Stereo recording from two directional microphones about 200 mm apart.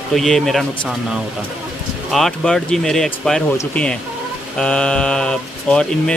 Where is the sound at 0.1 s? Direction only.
Centre (ahead or behind).